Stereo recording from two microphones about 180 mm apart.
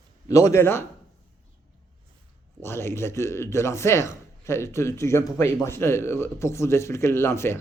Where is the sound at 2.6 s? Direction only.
15° left (ahead or behind).